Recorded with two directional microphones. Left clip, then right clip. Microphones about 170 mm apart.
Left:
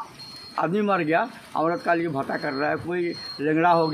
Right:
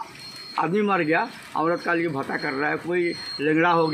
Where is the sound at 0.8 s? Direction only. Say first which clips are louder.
Even; 25° left (ahead or behind).